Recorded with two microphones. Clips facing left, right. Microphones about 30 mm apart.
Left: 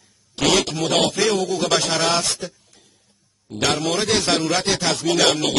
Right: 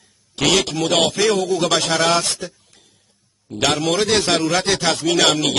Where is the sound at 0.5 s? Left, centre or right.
Centre.